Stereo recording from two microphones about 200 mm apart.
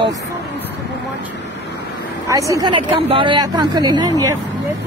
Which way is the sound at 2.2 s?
15° right (ahead or behind).